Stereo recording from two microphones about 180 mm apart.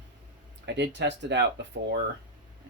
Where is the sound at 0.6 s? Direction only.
75° right (ahead or behind).